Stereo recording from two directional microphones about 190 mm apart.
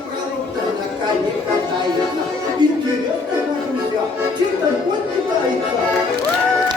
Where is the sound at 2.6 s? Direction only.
20° right (ahead or behind).